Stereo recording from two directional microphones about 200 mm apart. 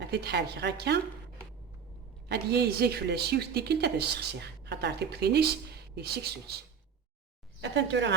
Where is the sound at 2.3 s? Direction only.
55° right (ahead or behind).